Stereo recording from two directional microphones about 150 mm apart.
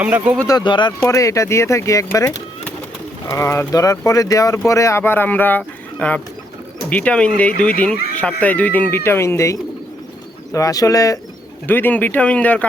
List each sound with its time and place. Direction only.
0.0 s speech: 10° right (ahead or behind)
0.4 s speech: 30° left (ahead or behind)
1.0 s speech: 20° left (ahead or behind)
3.2 s speech: 15° left (ahead or behind)